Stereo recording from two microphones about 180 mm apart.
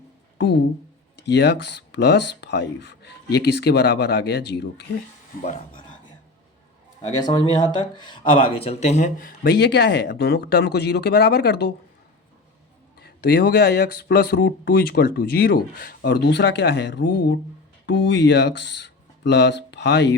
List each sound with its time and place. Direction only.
1.1 s speech: 70° left (ahead or behind)
5.4 s speech: 35° left (ahead or behind)
7.3 s speech: 25° left (ahead or behind); by 11.7 s 65° left (ahead or behind)
13.0 s speech: 60° left (ahead or behind)